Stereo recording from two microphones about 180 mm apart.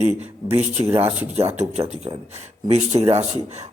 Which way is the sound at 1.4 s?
35° right (ahead or behind).